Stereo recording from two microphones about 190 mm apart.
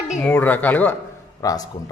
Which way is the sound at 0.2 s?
10° left (ahead or behind).